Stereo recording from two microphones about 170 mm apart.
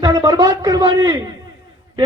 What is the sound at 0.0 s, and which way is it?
A man's voice, 25° right (ahead or behind).